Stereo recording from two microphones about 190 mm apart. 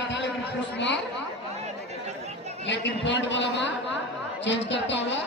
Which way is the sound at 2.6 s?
70° left (ahead or behind).